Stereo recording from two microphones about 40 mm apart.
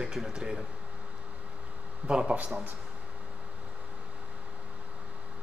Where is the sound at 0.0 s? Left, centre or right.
Centre.